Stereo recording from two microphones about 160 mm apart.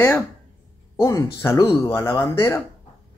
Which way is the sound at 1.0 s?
20° left (ahead or behind).